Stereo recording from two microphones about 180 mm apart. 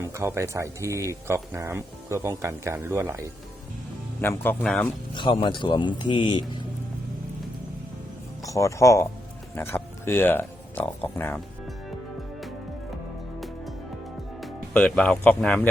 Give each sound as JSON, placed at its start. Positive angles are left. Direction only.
{"t": 0.0, "sound": "speech", "side_deg": -15}
{"t": 4.2, "sound": "speech", "side_deg": 10}
{"t": 5.1, "sound": "speech", "side_deg": 25}
{"t": 8.4, "sound": "speech", "side_deg": 15}
{"t": 14.4, "sound": "speech", "side_deg": 5}